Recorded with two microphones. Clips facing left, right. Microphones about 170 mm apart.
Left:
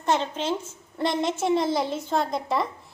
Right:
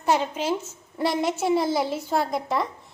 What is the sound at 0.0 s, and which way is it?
A woman's voice, 10° right (ahead or behind).